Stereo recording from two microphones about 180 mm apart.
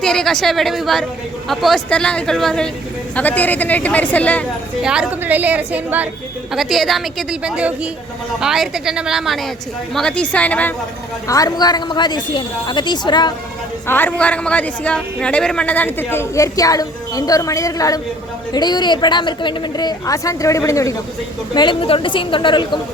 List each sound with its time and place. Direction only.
0.0 s a woman's voice: 5° left (ahead or behind)
4.8 s a woman's voice: 5° right (ahead or behind)
11.3 s a woman's voice: 20° left (ahead or behind)
13.8 s a woman's voice: 10° left (ahead or behind)